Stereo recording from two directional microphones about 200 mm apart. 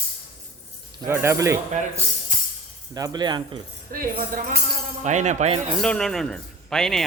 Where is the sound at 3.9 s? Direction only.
45° right (ahead or behind).